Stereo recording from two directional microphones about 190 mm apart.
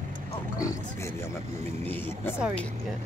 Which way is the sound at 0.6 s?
15° left (ahead or behind).